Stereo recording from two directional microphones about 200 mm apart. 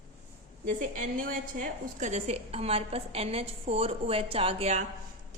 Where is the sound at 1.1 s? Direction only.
45° right (ahead or behind).